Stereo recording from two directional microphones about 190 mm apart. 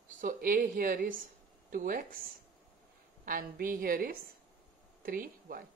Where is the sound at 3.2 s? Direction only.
50° right (ahead or behind).